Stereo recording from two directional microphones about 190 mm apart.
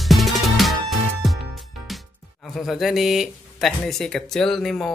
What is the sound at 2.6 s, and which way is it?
Speech, centre (ahead or behind).